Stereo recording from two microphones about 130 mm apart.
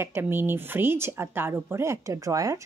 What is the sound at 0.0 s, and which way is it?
Speech, 20° right (ahead or behind).